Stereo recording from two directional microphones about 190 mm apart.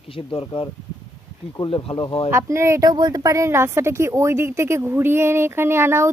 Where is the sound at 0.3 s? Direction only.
25° left (ahead or behind).